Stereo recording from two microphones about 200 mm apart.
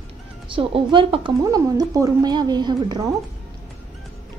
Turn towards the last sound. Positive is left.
turn(degrees=-20)  # may be behind; listen again after turning